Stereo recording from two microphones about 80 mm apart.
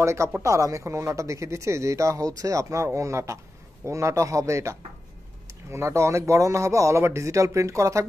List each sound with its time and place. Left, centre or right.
0.0 s speech: right